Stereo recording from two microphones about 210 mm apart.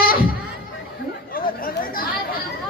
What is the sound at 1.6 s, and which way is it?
Chatter, 45° left (ahead or behind).